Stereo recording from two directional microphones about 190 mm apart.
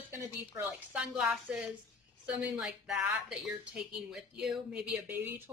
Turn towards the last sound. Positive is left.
turn(degrees=-5)  # may be behind; listen again after turning